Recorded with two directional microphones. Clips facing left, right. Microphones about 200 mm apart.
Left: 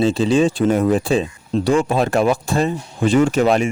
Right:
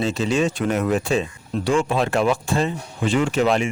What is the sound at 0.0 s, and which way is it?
Speech, 35° left (ahead or behind).